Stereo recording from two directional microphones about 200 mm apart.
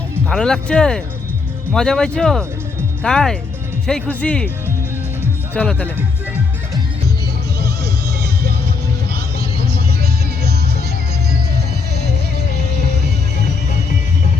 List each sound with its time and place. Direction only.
0.3 s speech: 5° left (ahead or behind)
5.5 s speech: 5° left (ahead or behind)